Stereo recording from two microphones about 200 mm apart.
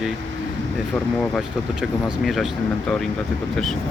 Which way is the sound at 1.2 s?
Centre (ahead or behind).